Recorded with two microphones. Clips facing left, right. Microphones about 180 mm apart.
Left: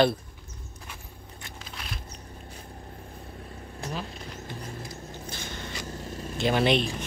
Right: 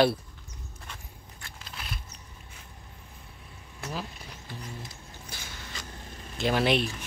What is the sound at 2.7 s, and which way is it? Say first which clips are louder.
Vehicle: left 8 dB; 50° left (ahead or behind).